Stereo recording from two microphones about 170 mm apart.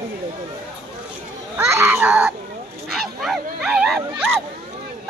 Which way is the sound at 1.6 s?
15° right (ahead or behind).